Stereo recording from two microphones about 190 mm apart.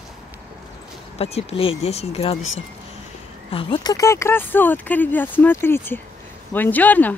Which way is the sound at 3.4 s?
25° left (ahead or behind).